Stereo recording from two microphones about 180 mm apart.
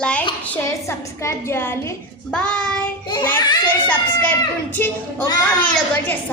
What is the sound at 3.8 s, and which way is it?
Speech, 10° left (ahead or behind).